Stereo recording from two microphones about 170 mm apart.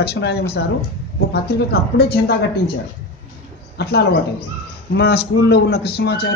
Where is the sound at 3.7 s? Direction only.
75° left (ahead or behind).